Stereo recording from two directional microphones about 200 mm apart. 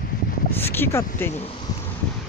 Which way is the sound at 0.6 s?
10° left (ahead or behind).